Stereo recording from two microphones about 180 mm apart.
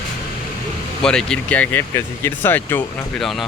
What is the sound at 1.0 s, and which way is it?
Speech, 5° left (ahead or behind).